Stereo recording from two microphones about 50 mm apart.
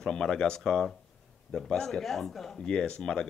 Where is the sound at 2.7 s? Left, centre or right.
Centre.